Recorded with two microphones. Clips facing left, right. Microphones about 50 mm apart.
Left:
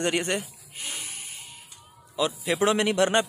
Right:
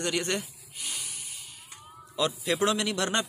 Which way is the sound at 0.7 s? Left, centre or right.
Left.